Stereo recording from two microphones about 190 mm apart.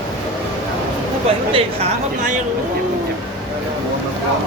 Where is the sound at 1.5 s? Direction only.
30° right (ahead or behind).